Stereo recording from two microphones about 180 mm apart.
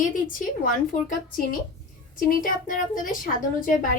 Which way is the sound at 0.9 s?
50° left (ahead or behind).